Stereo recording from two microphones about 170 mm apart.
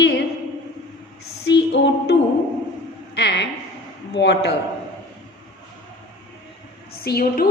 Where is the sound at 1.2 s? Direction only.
90° left.